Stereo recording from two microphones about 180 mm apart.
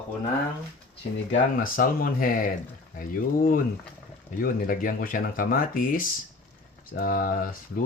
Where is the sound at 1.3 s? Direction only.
50° left (ahead or behind).